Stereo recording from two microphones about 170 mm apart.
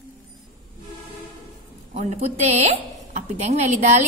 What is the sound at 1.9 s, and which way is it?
A man's voice, 40° right (ahead or behind).